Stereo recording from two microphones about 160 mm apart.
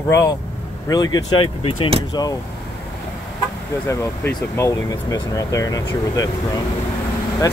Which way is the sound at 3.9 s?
20° left (ahead or behind).